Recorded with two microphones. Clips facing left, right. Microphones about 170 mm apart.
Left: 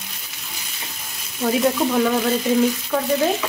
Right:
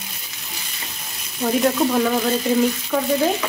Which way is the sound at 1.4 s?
Centre (ahead or behind).